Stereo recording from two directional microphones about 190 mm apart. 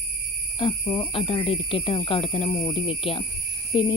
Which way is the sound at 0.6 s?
30° left (ahead or behind).